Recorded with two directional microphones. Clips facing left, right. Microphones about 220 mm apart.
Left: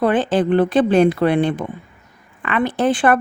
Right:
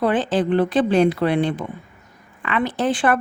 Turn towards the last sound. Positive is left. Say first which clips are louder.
# left 3 dB
turn(degrees=55)  # may be behind; listen again after turning